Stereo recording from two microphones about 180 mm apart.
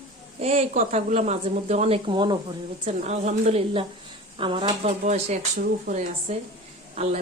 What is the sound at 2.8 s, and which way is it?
A woman's voice, 40° right (ahead or behind).